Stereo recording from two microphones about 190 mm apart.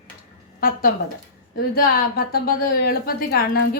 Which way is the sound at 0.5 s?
50° left (ahead or behind).